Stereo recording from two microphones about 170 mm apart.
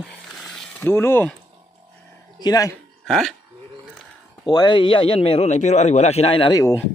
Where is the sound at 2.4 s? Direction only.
20° left (ahead or behind).